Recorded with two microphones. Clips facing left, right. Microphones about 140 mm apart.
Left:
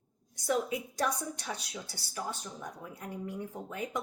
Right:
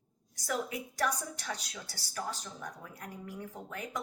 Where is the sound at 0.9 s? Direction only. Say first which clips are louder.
Right 1 dB; 20° left (ahead or behind).